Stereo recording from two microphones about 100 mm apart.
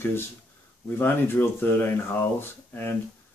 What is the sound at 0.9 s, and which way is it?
Speech, 20° left (ahead or behind).